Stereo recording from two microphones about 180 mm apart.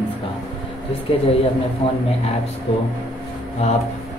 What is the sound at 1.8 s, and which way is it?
Speech, 30° left (ahead or behind).